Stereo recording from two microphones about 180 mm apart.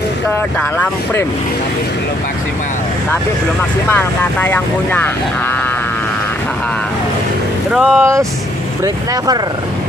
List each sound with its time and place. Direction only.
0.6 s speech: 5° left (ahead or behind)
3.9 s speech: 10° left (ahead or behind)
7.7 s speech: centre (ahead or behind)
8.0 s speech: 15° right (ahead or behind)